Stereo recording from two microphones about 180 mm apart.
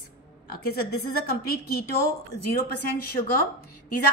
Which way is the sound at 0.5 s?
60° left (ahead or behind).